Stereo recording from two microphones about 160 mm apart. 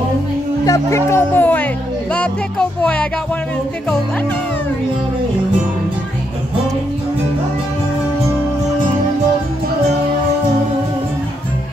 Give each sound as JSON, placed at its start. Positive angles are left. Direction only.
{"t": 0.7, "sound": "speech", "side_deg": 20}
{"t": 2.1, "sound": "music", "side_deg": 5}